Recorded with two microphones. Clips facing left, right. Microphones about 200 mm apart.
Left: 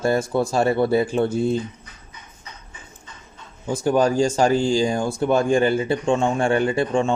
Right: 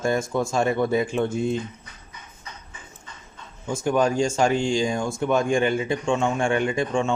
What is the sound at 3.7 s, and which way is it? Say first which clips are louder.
Speech: left 3 dB; 35° left (ahead or behind).